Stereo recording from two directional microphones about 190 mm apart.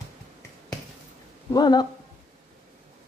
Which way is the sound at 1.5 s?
20° left (ahead or behind).